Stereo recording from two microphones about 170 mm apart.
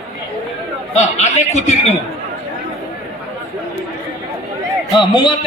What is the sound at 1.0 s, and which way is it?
Speech, 40° left (ahead or behind).